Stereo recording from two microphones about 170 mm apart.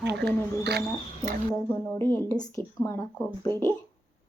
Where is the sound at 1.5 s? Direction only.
15° left (ahead or behind).